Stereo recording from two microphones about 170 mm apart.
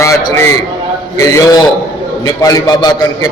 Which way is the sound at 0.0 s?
15° left (ahead or behind).